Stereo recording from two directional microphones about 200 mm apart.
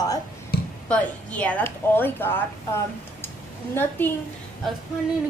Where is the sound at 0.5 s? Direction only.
50° left (ahead or behind).